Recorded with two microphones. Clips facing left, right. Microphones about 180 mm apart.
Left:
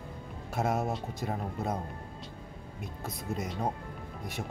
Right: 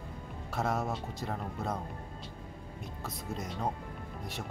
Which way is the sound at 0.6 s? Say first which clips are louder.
Left 2 dB; 20° left (ahead or behind).